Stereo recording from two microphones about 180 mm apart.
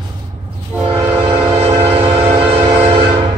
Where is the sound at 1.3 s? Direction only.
25° right (ahead or behind).